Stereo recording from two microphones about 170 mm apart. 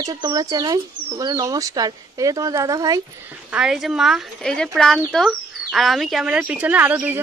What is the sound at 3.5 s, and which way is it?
Speech, 5° right (ahead or behind).